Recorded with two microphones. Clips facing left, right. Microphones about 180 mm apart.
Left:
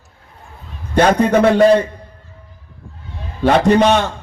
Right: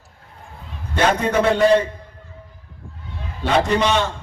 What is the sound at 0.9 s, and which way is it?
Speech, 45° left (ahead or behind).